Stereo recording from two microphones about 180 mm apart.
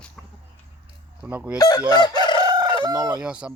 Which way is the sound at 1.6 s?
20° left (ahead or behind).